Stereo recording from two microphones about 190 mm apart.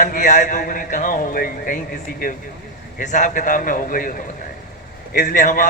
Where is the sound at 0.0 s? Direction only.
45° left (ahead or behind).